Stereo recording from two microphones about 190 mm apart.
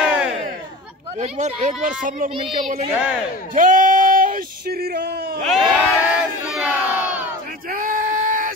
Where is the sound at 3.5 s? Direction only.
45° right (ahead or behind); by 5.4 s 60° right (ahead or behind).